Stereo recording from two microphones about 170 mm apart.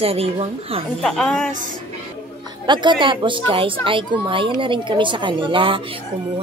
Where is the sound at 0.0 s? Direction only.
35° right (ahead or behind).